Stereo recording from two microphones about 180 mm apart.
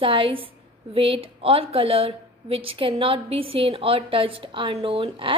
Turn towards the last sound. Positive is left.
turn(degrees=-30)  # may be behind; listen again after turning